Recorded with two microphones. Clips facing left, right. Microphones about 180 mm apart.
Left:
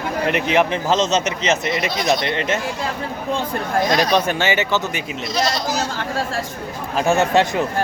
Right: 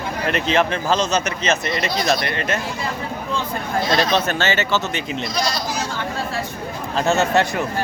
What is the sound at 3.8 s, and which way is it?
Speech, 15° left (ahead or behind).